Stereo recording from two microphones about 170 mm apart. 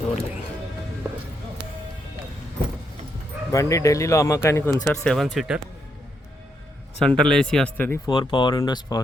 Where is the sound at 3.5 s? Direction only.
20° left (ahead or behind); by 5.6 s 5° right (ahead or behind).